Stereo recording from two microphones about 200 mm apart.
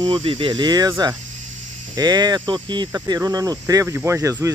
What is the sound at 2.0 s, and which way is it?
Speech, 20° right (ahead or behind).